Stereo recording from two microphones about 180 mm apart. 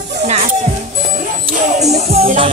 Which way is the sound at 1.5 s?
40° right (ahead or behind).